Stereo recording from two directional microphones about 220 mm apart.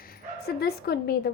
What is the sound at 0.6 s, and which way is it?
Speech, 45° left (ahead or behind).